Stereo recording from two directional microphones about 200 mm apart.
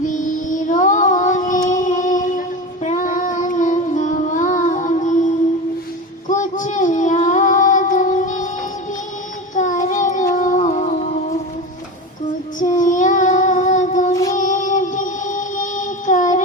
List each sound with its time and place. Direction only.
0.0 s music: 40° left (ahead or behind)
2.8 s child singing: 40° left (ahead or behind)
9.6 s child singing: 40° left (ahead or behind)
12.5 s child singing: 40° left (ahead or behind)
14.3 s music: 40° left (ahead or behind)